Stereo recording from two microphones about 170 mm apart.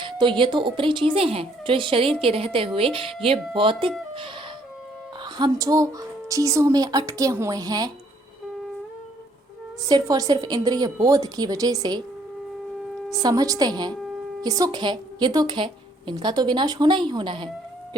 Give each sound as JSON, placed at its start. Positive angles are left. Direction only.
{"t": 0.0, "sound": "a woman's voice", "side_deg": -30}
{"t": 5.2, "sound": "a woman's voice", "side_deg": -25}
{"t": 9.9, "sound": "a woman's voice", "side_deg": -20}
{"t": 13.1, "sound": "a woman's voice", "side_deg": -20}